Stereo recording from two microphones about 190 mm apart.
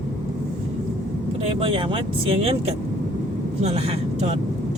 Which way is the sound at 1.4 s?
30° right (ahead or behind).